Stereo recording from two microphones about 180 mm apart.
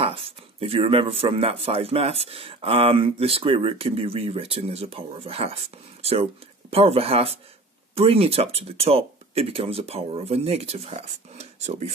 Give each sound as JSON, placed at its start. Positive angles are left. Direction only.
{"t": 0.0, "sound": "speech", "side_deg": -30}